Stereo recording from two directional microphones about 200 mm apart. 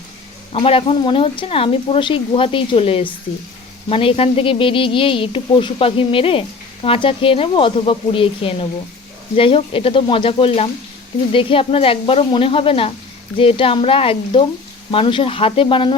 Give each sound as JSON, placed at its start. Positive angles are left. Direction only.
{"t": 0.5, "sound": "speech", "side_deg": 30}